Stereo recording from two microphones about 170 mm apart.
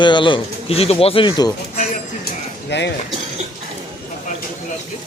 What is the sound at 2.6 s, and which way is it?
Speech, 90° left.